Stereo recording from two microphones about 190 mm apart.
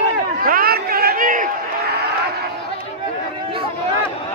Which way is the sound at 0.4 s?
50° right (ahead or behind).